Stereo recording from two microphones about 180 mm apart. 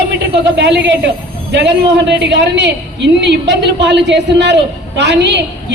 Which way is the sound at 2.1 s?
75° right (ahead or behind).